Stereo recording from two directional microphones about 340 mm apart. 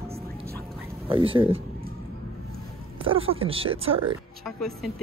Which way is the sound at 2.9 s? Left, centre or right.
Centre.